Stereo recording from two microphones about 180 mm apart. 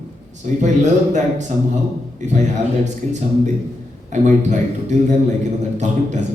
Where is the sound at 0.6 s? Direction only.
40° right (ahead or behind).